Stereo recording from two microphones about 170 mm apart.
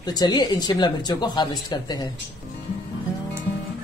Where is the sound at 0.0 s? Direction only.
25° left (ahead or behind).